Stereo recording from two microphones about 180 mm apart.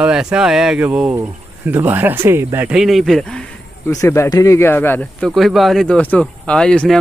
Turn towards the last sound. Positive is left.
turn(degrees=5)  # may be behind; listen again after turning